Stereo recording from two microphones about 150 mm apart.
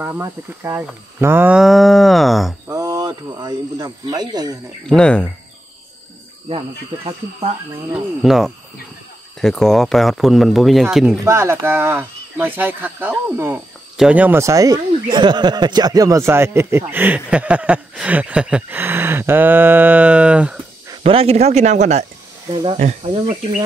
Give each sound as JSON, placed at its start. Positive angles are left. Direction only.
{"t": 0.0, "sound": "speech", "side_deg": -15}
{"t": 2.7, "sound": "speech", "side_deg": -20}
{"t": 4.8, "sound": "speech", "side_deg": 5}
{"t": 7.1, "sound": "speech", "side_deg": -40}
{"t": 7.9, "sound": "speech", "side_deg": 0}
{"t": 11.2, "sound": "speech", "side_deg": -15}
{"t": 21.0, "sound": "speech", "side_deg": -40}
{"t": 22.5, "sound": "speech", "side_deg": -35}